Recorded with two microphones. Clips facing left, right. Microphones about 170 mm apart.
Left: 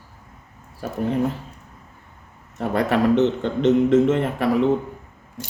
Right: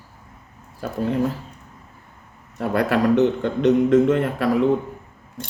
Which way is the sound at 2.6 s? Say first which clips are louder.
Even; 25° left (ahead or behind).